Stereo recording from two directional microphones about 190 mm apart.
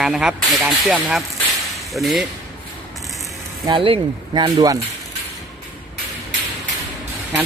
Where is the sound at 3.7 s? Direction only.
25° right (ahead or behind).